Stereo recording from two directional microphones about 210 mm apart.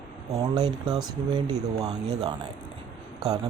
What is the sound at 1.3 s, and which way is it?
Speech, 20° right (ahead or behind).